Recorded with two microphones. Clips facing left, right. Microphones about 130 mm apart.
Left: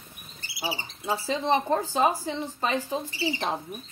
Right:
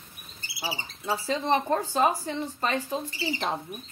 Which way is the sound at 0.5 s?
20° left (ahead or behind).